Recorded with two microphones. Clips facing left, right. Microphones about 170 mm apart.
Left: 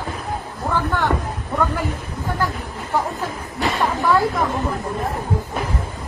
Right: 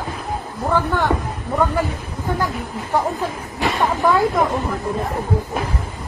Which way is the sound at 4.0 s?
20° right (ahead or behind).